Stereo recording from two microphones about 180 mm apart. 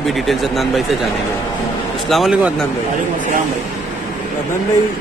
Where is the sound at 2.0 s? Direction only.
Centre (ahead or behind).